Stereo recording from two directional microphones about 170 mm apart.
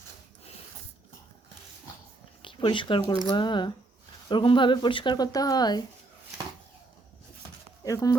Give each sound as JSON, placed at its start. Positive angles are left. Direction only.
{"t": 2.4, "sound": "a sound", "side_deg": 30}
{"t": 3.1, "sound": "speech", "side_deg": 25}
{"t": 7.9, "sound": "speech", "side_deg": 20}